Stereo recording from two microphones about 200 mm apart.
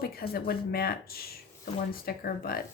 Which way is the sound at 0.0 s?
50° left (ahead or behind).